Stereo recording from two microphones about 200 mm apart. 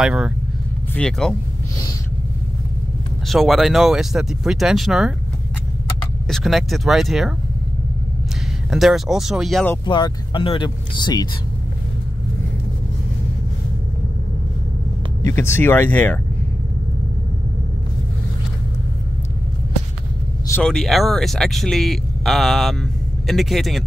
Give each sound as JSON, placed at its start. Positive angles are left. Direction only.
{"t": 0.0, "sound": "speech", "side_deg": -5}
{"t": 3.3, "sound": "speech", "side_deg": 0}
{"t": 6.2, "sound": "speech", "side_deg": 0}
{"t": 8.6, "sound": "speech", "side_deg": 0}
{"t": 9.8, "sound": "speech", "side_deg": 25}
{"t": 15.2, "sound": "speech", "side_deg": 15}
{"t": 20.5, "sound": "speech", "side_deg": 5}